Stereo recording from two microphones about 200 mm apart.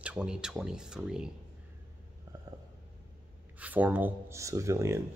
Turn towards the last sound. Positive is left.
turn(degrees=-15)  # may be behind; listen again after turning